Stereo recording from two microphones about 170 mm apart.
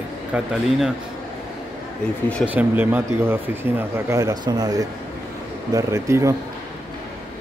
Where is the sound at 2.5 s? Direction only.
10° right (ahead or behind).